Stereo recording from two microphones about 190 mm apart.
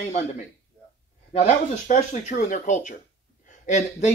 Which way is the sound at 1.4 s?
40° left (ahead or behind).